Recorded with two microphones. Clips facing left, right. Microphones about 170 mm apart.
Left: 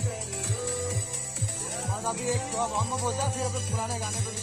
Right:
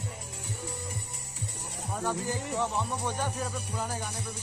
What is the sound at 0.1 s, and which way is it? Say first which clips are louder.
Music: left 6 dB; 80° left.